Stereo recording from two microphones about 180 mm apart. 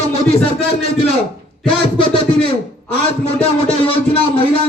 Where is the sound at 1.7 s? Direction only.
30° left (ahead or behind).